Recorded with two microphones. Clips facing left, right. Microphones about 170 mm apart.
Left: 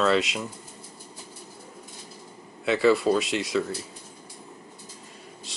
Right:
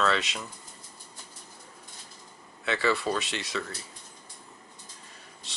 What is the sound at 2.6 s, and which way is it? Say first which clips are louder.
Speech: left 7 dB; centre (ahead or behind).